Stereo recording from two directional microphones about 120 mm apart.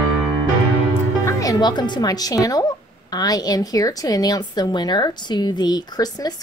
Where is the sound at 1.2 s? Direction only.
25° left (ahead or behind).